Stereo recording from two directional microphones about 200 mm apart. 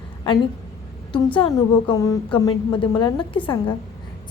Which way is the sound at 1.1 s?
25° left (ahead or behind).